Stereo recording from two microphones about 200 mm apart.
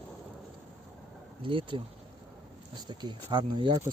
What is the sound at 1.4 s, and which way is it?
Speech, 25° right (ahead or behind).